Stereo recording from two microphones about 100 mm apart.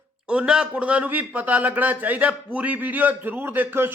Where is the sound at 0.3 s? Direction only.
10° right (ahead or behind).